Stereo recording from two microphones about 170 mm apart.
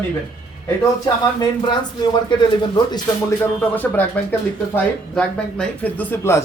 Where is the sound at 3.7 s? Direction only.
10° left (ahead or behind).